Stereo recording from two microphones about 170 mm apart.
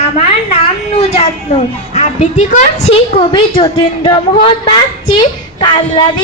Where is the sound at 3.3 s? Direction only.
30° left (ahead or behind).